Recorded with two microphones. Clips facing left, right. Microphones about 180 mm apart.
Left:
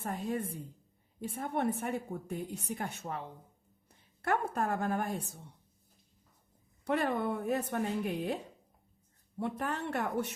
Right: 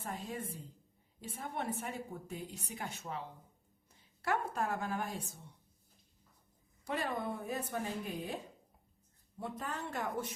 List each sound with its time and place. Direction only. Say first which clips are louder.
0.0 s speech: left 6 dB; 55° left (ahead or behind)
6.8 s speech: left 6 dB; 60° left (ahead or behind)
9.4 s a woman's voice: left 6 dB; 65° left (ahead or behind)